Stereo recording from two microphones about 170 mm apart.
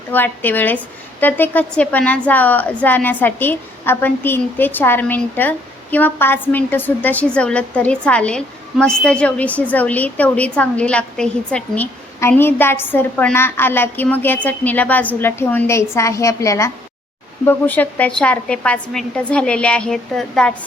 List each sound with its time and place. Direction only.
0.1 s a woman's voice: 10° left (ahead or behind)